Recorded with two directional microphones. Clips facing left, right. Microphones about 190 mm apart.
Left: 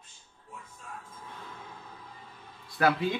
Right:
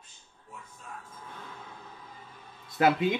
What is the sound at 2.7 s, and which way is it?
Speech, 20° right (ahead or behind).